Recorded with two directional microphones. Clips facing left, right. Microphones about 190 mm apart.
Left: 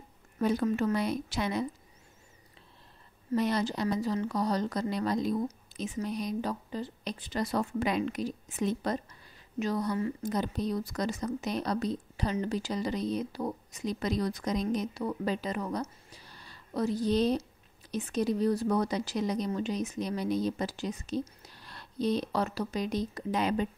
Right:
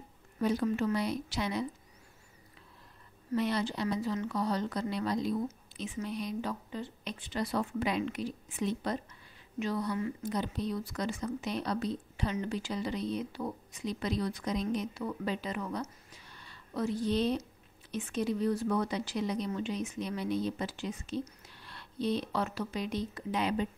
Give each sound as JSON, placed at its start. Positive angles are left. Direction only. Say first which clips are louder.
{"t": 0.4, "sound": "a woman's voice", "louder": "left 2 dB", "side_deg": 50}
{"t": 3.3, "sound": "a woman's voice", "louder": "left 2 dB", "side_deg": 40}